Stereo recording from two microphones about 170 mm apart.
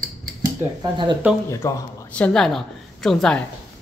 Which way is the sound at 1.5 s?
15° left (ahead or behind).